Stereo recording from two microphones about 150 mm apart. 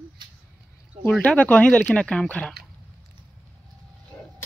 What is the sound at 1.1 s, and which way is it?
Speech, 5° left (ahead or behind).